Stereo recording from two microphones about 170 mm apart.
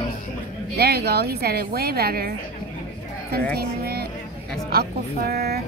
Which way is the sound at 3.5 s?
70° right (ahead or behind).